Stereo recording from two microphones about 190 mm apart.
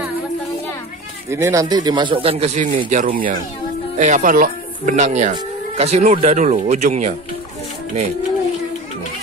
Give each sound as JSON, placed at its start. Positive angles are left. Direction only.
{"t": 1.3, "sound": "speech", "side_deg": -15}